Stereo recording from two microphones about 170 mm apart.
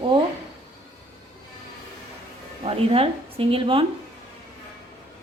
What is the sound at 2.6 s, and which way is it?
Speech, 35° right (ahead or behind).